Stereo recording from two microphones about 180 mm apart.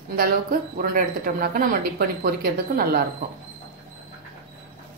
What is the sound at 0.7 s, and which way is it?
Speech, 50° right (ahead or behind).